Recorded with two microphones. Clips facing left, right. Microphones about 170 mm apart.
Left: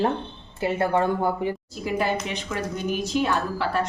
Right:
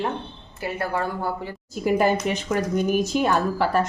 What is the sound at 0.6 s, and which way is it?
Speech, 25° left (ahead or behind).